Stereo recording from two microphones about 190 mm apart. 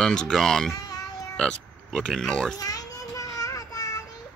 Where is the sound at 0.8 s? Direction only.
20° left (ahead or behind).